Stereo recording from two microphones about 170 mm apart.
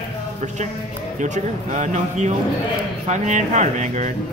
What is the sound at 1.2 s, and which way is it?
Speech, 45° right (ahead or behind).